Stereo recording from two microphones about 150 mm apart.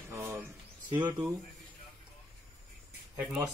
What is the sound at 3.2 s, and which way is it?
Speech, 5° right (ahead or behind).